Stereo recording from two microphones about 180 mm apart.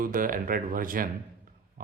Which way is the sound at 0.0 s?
50° right (ahead or behind).